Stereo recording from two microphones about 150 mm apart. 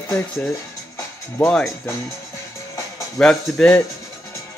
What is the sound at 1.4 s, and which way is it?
Speech, 10° left (ahead or behind).